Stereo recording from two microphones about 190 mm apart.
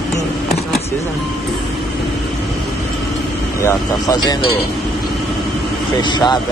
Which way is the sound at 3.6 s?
20° left (ahead or behind).